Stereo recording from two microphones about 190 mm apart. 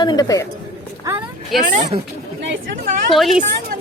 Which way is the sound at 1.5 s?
Centre (ahead or behind).